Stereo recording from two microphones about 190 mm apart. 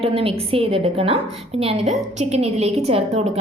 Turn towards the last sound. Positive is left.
turn(degrees=-35)  # may be behind; listen again after turning